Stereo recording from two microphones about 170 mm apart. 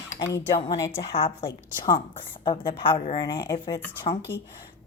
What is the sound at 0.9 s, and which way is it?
Speech, 35° left (ahead or behind).